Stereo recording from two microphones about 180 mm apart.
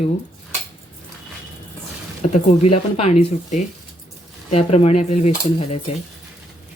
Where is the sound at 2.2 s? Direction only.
40° left (ahead or behind).